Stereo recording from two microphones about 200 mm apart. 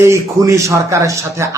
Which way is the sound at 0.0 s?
15° right (ahead or behind).